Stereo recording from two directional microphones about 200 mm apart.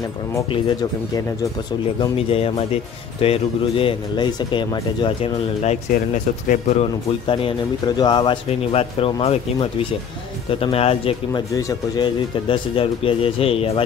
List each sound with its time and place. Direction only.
0.5 s speech: 20° left (ahead or behind)